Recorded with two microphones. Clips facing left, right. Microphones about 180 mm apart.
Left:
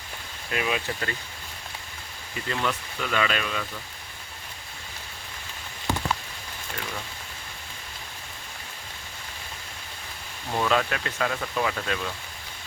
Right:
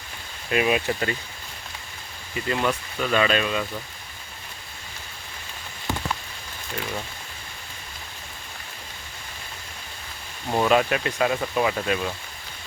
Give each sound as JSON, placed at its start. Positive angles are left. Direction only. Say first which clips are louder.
{"t": 0.5, "sound": "speech", "louder": "right 6 dB", "side_deg": -20}
{"t": 2.5, "sound": "speech", "louder": "right 4 dB", "side_deg": -15}
{"t": 10.5, "sound": "speech", "louder": "right 5 dB", "side_deg": -20}